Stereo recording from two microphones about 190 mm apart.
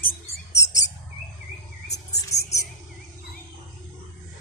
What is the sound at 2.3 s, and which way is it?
Mouse, 15° left (ahead or behind).